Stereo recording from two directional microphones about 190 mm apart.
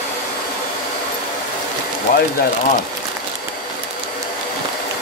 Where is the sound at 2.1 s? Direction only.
50° left (ahead or behind).